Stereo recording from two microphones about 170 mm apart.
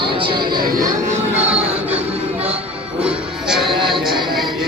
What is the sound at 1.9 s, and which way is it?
Music, 40° right (ahead or behind).